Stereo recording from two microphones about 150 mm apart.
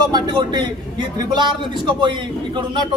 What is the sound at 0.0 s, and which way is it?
A man's voice, 30° right (ahead or behind).